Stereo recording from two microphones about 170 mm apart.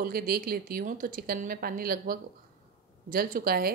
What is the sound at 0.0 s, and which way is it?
A woman's voice, 60° right (ahead or behind).